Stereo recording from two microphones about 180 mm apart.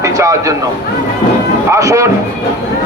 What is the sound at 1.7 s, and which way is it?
Speech, 15° right (ahead or behind).